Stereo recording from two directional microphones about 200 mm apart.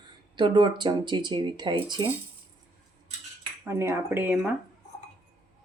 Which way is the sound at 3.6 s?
15° right (ahead or behind).